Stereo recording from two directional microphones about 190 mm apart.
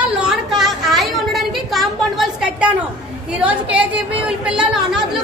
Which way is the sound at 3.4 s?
5° right (ahead or behind).